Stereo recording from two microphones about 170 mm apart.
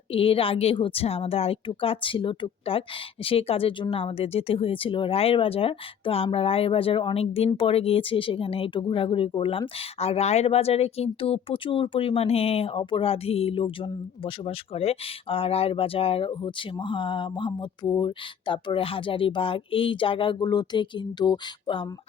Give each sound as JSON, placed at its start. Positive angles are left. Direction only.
{"t": 0.1, "sound": "speech", "side_deg": 35}